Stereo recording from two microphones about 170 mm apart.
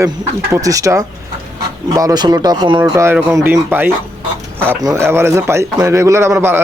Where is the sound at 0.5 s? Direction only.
20° right (ahead or behind).